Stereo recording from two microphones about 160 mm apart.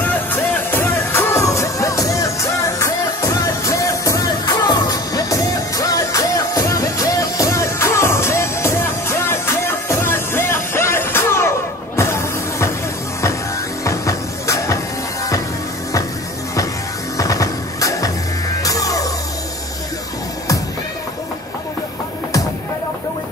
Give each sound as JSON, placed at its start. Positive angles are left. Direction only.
{"t": 0.0, "sound": "music", "side_deg": 10}
{"t": 13.8, "sound": "music", "side_deg": 20}
{"t": 17.2, "sound": "music", "side_deg": 20}